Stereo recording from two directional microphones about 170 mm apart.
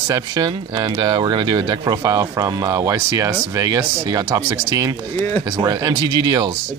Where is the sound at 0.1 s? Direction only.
25° right (ahead or behind).